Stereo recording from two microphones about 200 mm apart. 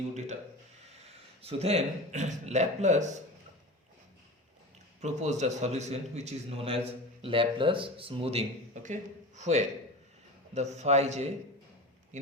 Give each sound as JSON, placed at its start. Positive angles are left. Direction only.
{"t": 1.0, "sound": "a man's voice", "side_deg": -30}
{"t": 4.9, "sound": "a man's voice", "side_deg": -35}